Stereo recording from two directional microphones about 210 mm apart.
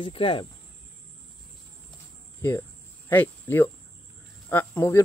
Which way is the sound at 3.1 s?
10° left (ahead or behind).